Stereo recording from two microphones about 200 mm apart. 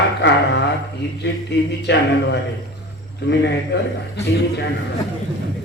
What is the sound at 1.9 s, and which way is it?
Speech, 60° left (ahead or behind).